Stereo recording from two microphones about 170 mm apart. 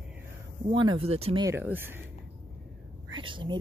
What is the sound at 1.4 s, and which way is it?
Speech, 15° right (ahead or behind).